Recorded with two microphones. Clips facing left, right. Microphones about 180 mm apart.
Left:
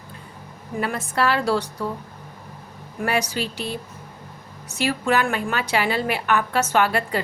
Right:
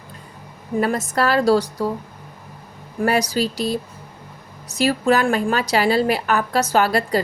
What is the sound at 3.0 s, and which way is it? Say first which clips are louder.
A woman's voice: right 5 dB; 40° right (ahead or behind).